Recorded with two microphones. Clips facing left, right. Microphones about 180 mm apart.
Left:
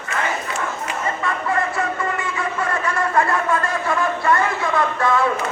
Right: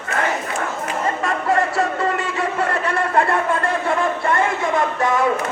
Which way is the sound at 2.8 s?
30° right (ahead or behind).